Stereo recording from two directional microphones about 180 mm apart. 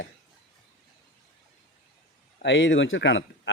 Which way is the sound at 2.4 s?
85° left.